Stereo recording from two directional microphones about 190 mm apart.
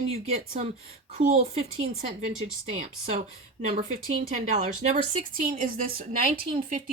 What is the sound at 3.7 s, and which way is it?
A woman's voice, 45° right (ahead or behind).